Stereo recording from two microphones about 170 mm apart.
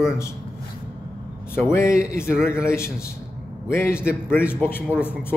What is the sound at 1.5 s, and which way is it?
A man's voice, 15° left (ahead or behind).